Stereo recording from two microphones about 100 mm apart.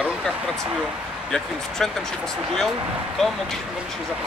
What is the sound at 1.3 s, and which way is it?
Speech, 5° left (ahead or behind).